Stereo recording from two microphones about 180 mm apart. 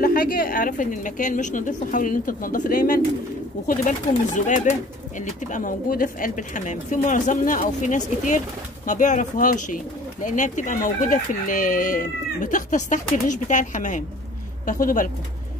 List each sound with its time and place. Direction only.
0.0 s speech: 55° left (ahead or behind)
4.5 s speech: 45° left (ahead or behind)